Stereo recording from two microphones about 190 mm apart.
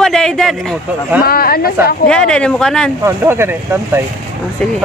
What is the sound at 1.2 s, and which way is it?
Speech, 50° left (ahead or behind).